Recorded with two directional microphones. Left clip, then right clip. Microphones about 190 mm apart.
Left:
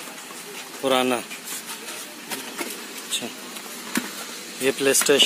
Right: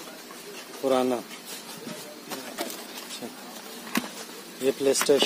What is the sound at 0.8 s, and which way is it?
Speech, 5° right (ahead or behind).